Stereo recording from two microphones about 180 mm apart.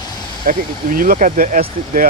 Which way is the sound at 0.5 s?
50° right (ahead or behind).